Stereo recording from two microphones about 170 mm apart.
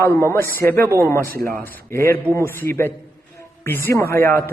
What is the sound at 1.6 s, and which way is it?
Speech, 15° left (ahead or behind).